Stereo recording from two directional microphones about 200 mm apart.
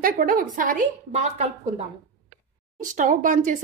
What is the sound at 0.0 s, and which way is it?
A woman's voice, 45° right (ahead or behind).